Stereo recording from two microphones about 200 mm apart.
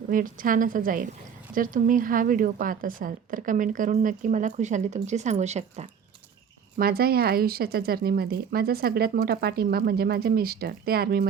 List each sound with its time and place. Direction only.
0.1 s a woman's voice: 45° right (ahead or behind)
6.7 s a woman's voice: 50° right (ahead or behind)